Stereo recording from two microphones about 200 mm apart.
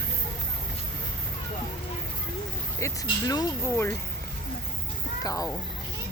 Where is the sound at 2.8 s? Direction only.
15° left (ahead or behind).